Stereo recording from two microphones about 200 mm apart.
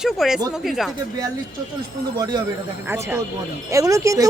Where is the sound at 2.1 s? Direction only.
20° right (ahead or behind).